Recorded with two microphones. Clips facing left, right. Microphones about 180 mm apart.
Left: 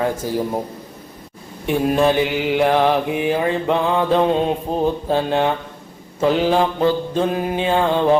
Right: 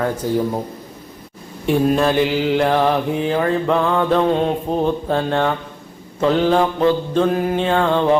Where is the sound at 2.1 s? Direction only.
5° left (ahead or behind).